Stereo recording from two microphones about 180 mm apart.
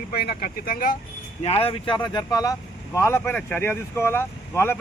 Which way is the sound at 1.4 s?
35° left (ahead or behind).